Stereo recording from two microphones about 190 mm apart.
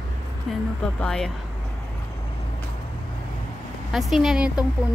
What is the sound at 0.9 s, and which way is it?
Speech, 5° left (ahead or behind).